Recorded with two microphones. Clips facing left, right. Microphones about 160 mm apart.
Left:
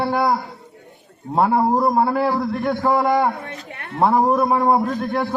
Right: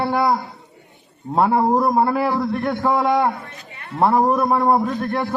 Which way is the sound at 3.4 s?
70° left (ahead or behind).